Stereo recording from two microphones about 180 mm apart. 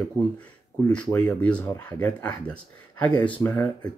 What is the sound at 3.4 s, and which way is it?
Speech, 20° left (ahead or behind).